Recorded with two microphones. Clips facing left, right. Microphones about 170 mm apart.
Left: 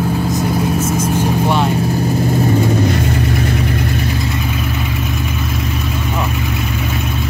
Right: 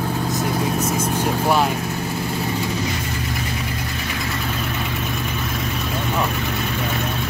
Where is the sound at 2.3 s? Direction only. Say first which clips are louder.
Left 10 dB; 50° left (ahead or behind).